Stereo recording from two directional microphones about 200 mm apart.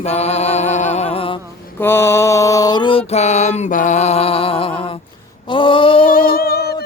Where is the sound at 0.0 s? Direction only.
35° left (ahead or behind).